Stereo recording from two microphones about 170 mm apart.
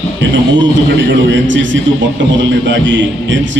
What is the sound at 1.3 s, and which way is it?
A man's voice, 90° right.